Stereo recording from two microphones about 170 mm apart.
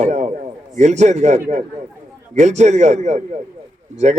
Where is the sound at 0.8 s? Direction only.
45° right (ahead or behind).